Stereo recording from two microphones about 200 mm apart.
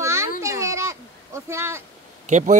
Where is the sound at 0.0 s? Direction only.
15° right (ahead or behind).